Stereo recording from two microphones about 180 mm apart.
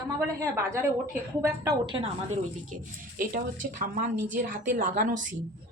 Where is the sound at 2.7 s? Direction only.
50° right (ahead or behind).